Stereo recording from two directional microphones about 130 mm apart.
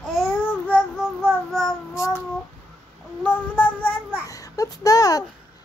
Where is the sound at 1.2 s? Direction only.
Centre (ahead or behind).